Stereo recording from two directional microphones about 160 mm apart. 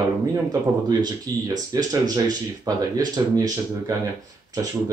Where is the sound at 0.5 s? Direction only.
25° right (ahead or behind).